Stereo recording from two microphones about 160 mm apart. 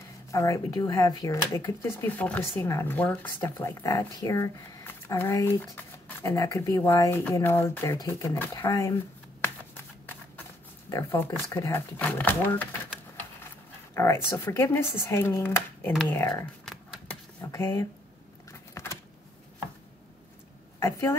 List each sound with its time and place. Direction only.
0.3 s speech: 20° left (ahead or behind)
10.9 s speech: 15° left (ahead or behind)
13.9 s speech: 15° left (ahead or behind)
18.5 s a sound: 20° left (ahead or behind)
20.8 s speech: 15° left (ahead or behind)